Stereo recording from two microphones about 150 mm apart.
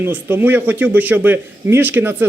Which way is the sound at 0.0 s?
15° right (ahead or behind).